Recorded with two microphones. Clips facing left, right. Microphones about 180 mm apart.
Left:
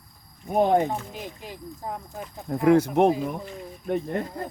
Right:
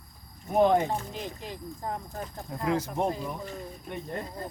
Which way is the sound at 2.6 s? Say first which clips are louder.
Left 10 dB; 70° left (ahead or behind).